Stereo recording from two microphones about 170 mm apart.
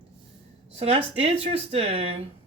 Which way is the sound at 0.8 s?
35° right (ahead or behind).